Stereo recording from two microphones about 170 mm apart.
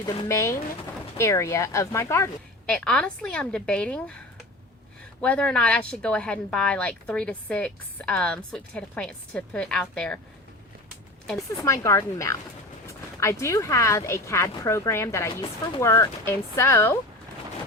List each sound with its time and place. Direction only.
0.3 s a woman's voice: 15° left (ahead or behind)
2.6 s speech: 5° left (ahead or behind)
5.2 s speech: 5° left (ahead or behind)
11.5 s a woman's voice: 20° left (ahead or behind)
13.4 s a woman's voice: 15° left (ahead or behind)